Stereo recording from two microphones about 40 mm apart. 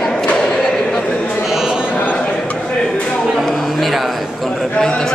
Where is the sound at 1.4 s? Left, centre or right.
Centre.